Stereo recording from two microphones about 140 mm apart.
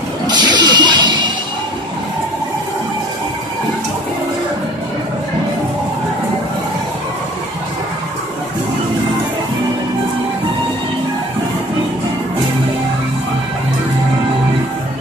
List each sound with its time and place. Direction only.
0.3 s music: 30° right (ahead or behind)